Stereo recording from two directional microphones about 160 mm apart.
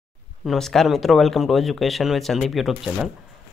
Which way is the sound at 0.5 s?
Centre (ahead or behind).